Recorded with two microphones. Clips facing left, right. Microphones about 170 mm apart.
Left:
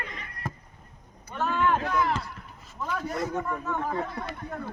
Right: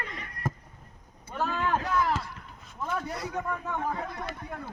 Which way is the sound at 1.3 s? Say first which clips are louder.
Left 3 dB; 35° right (ahead or behind).